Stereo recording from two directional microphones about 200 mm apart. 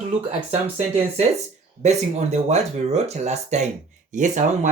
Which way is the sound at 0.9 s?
30° right (ahead or behind).